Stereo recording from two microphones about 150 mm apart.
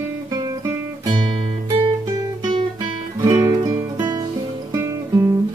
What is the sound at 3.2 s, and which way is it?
Music, 20° right (ahead or behind).